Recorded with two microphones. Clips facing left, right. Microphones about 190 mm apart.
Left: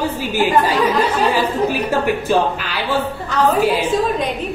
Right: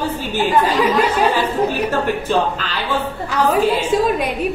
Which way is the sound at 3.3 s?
10° right (ahead or behind).